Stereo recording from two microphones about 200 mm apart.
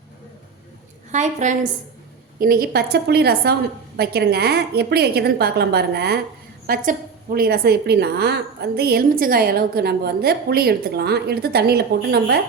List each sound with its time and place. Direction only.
1.1 s a woman's voice: 35° right (ahead or behind)
2.4 s a woman's voice: 50° right (ahead or behind)